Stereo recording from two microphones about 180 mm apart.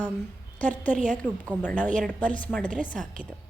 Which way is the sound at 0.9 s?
45° right (ahead or behind).